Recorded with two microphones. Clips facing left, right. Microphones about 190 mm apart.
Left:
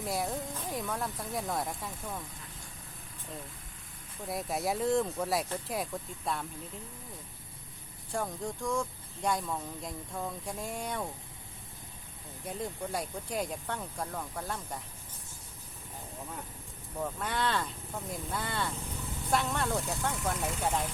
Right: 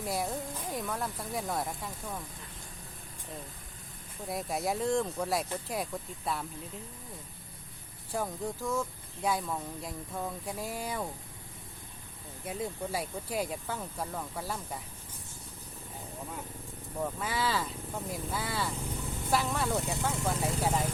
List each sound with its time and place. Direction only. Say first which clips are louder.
0.0 s speech: even; centre (ahead or behind)
4.3 s speech: even; centre (ahead or behind)
8.1 s speech: right 1 dB; 5° right (ahead or behind)
12.5 s speech: right 1 dB; 5° right (ahead or behind)
17.0 s speech: even; 5° right (ahead or behind)
20.3 s speech: right 2 dB; 30° right (ahead or behind)
20.6 s speech: right 1 dB; centre (ahead or behind)